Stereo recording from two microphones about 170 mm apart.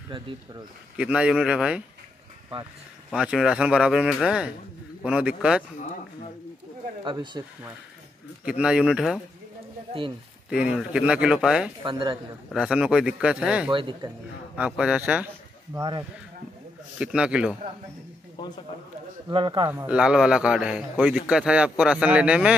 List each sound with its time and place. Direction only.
0.9 s speech: 5° right (ahead or behind)
3.1 s a man's voice: 5° right (ahead or behind)
7.1 s speech: 25° right (ahead or behind)
8.5 s a man's voice: 5° right (ahead or behind)
10.5 s a man's voice: 5° right (ahead or behind)
11.8 s speech: 30° right (ahead or behind)
12.5 s a man's voice: 5° right (ahead or behind)
13.7 s speech: 30° right (ahead or behind)
14.6 s speech: 5° right (ahead or behind)
17.0 s a man's voice: 5° right (ahead or behind)
19.2 s speech: 30° right (ahead or behind)
19.7 s a man's voice: 10° right (ahead or behind)